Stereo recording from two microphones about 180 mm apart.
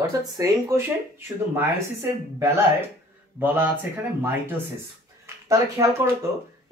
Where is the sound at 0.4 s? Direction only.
15° right (ahead or behind).